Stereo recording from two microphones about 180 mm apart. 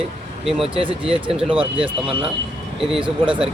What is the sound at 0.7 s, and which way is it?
Speech, 30° right (ahead or behind).